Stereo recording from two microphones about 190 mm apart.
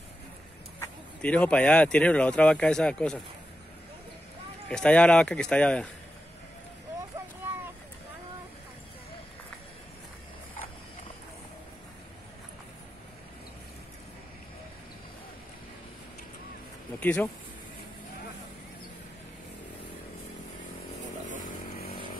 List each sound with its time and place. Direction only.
0.7 s speech: 5° left (ahead or behind)
4.6 s speech: 5° left (ahead or behind)
17.0 s speech: 10° left (ahead or behind)
21.4 s chainsaw: 55° left (ahead or behind)